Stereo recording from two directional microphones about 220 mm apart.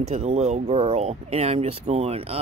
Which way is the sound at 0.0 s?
30° right (ahead or behind).